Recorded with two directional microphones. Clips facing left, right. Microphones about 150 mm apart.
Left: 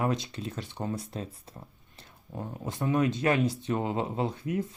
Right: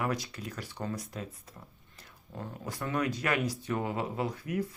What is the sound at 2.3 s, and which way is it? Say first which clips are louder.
Speech: left 3 dB; 20° left (ahead or behind).